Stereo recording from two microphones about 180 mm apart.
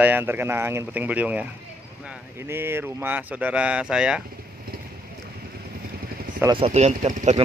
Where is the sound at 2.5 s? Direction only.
15° right (ahead or behind).